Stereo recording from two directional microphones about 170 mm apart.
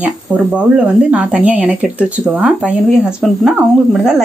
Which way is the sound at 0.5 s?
5° right (ahead or behind).